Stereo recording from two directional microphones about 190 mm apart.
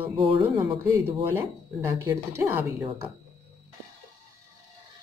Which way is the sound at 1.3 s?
15° right (ahead or behind).